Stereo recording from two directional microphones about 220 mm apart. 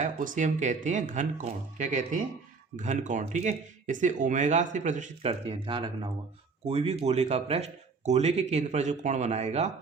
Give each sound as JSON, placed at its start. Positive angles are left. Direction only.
{"t": 0.0, "sound": "speech", "side_deg": -35}